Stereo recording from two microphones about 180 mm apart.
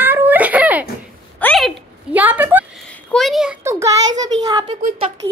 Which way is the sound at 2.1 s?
10° right (ahead or behind).